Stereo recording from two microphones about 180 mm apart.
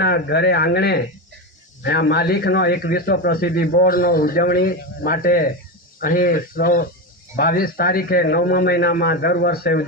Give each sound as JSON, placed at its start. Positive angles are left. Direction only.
{"t": 0.0, "sound": "speech", "side_deg": 70}